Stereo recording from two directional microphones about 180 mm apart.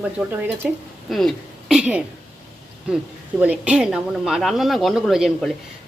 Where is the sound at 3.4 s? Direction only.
10° right (ahead or behind).